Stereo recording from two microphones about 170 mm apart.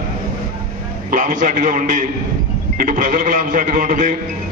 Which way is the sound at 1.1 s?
50° right (ahead or behind).